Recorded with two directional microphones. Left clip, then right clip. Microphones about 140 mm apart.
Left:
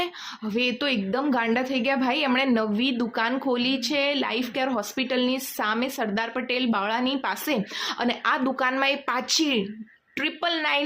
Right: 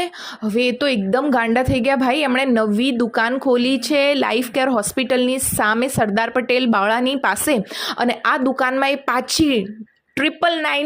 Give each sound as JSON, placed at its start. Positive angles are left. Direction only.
{"t": 0.0, "sound": "a woman's voice", "side_deg": -45}